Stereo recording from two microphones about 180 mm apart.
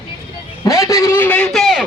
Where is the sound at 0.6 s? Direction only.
20° left (ahead or behind); by 1.8 s centre (ahead or behind).